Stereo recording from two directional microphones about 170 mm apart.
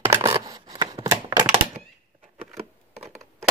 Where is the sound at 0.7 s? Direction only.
25° right (ahead or behind).